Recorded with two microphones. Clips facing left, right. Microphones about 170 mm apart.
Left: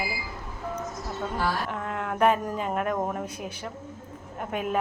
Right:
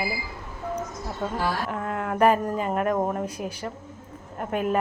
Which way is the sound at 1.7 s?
Centre (ahead or behind).